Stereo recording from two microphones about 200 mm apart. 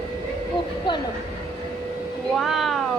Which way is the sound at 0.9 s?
25° left (ahead or behind).